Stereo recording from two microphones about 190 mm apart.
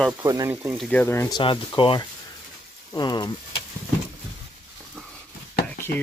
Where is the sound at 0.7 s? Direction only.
5° left (ahead or behind).